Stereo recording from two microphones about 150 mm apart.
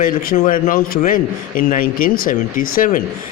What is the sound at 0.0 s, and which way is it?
A man's voice, 70° left (ahead or behind).